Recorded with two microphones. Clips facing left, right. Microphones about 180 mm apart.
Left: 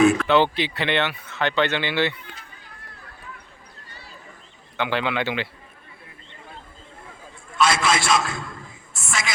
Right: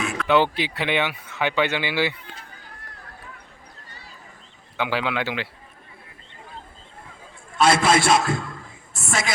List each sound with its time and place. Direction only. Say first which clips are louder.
0.3 s speech: left 1 dB; 10° right (ahead or behind)
4.8 s a man's voice: left 1 dB; 5° right (ahead or behind)
7.6 s a man's voice: right 3 dB; 55° right (ahead or behind)